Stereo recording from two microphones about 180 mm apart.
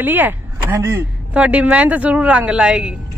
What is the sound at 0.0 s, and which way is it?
Speech, 10° right (ahead or behind).